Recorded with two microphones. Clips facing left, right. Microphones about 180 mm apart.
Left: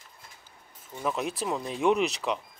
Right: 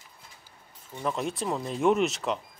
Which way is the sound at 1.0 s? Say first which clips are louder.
Even; centre (ahead or behind).